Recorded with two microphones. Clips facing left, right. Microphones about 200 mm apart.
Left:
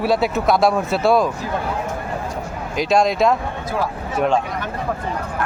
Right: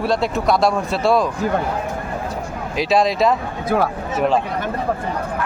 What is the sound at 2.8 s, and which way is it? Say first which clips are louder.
Speech: even; centre (ahead or behind).